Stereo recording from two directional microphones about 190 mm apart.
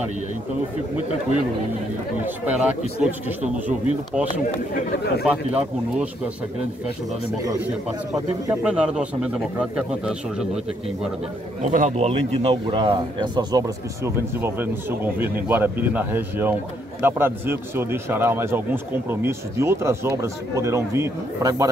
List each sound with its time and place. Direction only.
3.0 s a man's voice: 5° right (ahead or behind)
8.5 s speech: 5° right (ahead or behind)
11.7 s a man's voice: 40° right (ahead or behind); by 21.6 s 15° right (ahead or behind)